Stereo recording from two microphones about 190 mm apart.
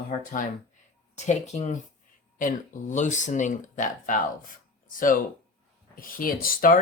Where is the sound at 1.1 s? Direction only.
40° left (ahead or behind).